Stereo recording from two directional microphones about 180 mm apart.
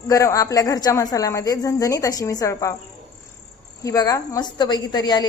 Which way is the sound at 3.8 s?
20° left (ahead or behind).